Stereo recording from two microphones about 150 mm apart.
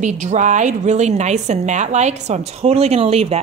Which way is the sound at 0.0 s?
55° right (ahead or behind).